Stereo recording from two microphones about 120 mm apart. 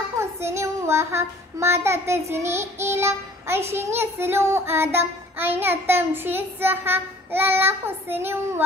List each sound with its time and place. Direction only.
0.2 s child singing: 20° right (ahead or behind)